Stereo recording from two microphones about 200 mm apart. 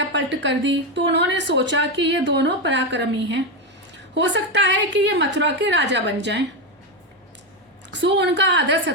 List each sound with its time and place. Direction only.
0.1 s a woman's voice: 65° right (ahead or behind)
8.0 s a woman's voice: 60° right (ahead or behind)